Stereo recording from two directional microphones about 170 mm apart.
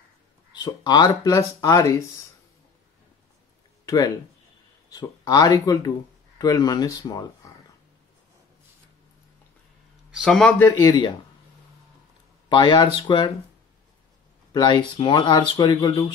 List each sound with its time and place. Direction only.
0.5 s speech: 25° left (ahead or behind)
3.8 s speech: 20° left (ahead or behind)
10.1 s speech: centre (ahead or behind)
10.6 s speech: 20° left (ahead or behind)
12.4 s speech: 25° left (ahead or behind)
14.5 s speech: 25° left (ahead or behind)